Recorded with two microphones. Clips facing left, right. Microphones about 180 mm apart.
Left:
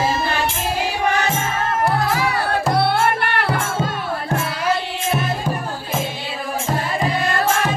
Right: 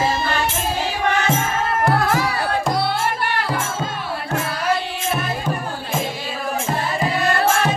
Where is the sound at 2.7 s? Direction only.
60° left (ahead or behind).